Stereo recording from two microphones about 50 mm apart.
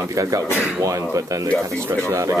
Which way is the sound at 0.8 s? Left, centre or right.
Right.